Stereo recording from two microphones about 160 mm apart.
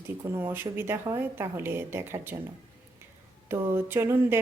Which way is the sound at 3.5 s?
15° right (ahead or behind).